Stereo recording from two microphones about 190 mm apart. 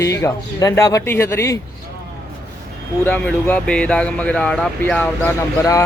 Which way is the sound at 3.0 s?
5° left (ahead or behind).